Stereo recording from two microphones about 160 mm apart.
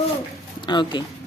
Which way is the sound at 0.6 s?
30° left (ahead or behind).